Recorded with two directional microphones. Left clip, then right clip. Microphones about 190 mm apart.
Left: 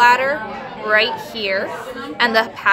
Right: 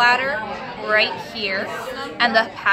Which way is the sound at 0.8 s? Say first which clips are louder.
Left 2 dB; 50° left (ahead or behind).